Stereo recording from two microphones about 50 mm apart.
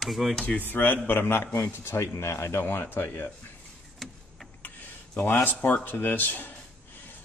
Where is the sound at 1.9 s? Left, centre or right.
Left.